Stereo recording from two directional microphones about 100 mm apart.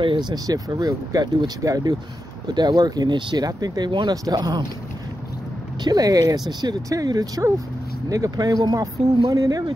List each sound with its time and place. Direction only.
0.0 s speech: 50° right (ahead or behind)
5.9 s speech: 40° right (ahead or behind)